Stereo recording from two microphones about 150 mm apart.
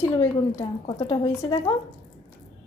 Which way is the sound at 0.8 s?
35° left (ahead or behind).